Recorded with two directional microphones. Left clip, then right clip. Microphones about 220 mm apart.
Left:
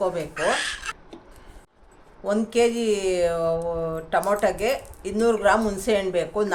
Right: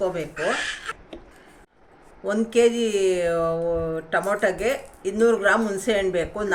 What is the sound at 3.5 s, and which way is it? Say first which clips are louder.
A woman's voice: right 1 dB; 35° left (ahead or behind).